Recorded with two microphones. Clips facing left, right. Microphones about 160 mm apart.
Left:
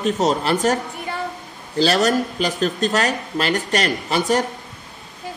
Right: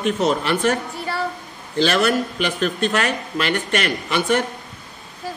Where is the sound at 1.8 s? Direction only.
35° left (ahead or behind).